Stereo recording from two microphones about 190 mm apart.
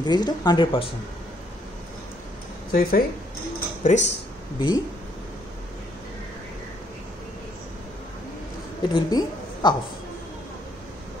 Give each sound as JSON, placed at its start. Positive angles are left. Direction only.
{"t": 0.0, "sound": "speech", "side_deg": 20}
{"t": 2.7, "sound": "speech", "side_deg": 55}
{"t": 3.8, "sound": "speech", "side_deg": 40}
{"t": 4.6, "sound": "speech", "side_deg": 25}
{"t": 8.9, "sound": "a woman's voice", "side_deg": 20}